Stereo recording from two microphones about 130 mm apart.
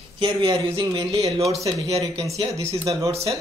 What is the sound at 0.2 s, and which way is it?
A man's voice, 40° right (ahead or behind).